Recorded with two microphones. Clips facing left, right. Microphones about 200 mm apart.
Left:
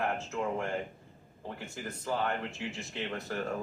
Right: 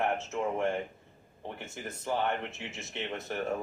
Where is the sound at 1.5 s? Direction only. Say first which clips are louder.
Even; 25° right (ahead or behind).